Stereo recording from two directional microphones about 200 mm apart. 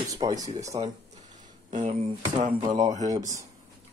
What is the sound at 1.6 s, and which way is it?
Speech, 40° right (ahead or behind).